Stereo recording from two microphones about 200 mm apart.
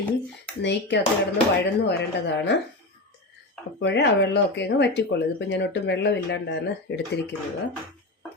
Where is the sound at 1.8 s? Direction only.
60° left (ahead or behind).